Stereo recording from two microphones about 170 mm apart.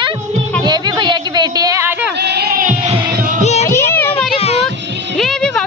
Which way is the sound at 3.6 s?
15° left (ahead or behind).